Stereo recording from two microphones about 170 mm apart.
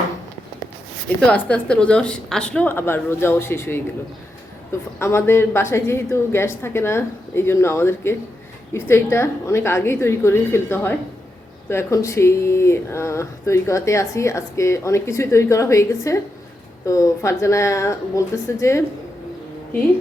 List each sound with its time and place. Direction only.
1.2 s speech: 5° left (ahead or behind)
4.9 s speech: 15° left (ahead or behind)